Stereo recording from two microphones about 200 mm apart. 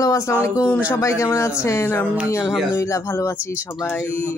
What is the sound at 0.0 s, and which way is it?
Speech, 15° left (ahead or behind).